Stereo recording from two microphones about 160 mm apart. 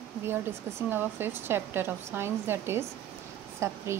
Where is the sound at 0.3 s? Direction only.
15° right (ahead or behind).